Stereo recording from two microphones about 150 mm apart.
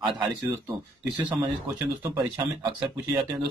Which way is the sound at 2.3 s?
30° right (ahead or behind).